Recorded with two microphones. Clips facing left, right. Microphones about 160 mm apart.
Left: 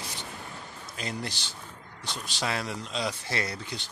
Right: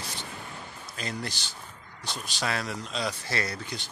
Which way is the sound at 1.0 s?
20° left (ahead or behind).